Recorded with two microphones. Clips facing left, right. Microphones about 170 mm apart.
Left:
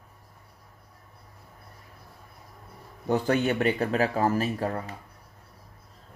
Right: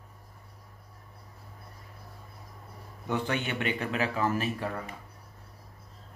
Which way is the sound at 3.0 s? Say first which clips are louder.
Left 7 dB; 40° left (ahead or behind).